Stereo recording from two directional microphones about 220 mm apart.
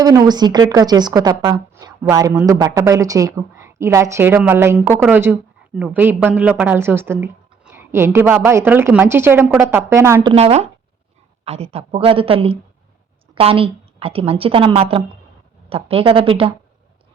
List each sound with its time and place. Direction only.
0.0 s speech: 15° right (ahead or behind)
10.3 s a woman's voice: 30° right (ahead or behind)